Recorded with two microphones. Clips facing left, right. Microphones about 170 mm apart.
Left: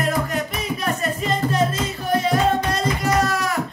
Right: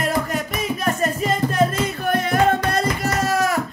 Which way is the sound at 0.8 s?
45° right (ahead or behind).